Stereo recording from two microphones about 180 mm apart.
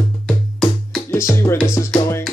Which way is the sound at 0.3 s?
5° left (ahead or behind).